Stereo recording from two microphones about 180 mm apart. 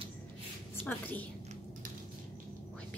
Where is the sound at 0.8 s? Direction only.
10° left (ahead or behind).